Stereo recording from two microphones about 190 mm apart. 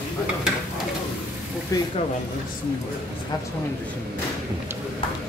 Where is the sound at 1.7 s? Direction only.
20° left (ahead or behind).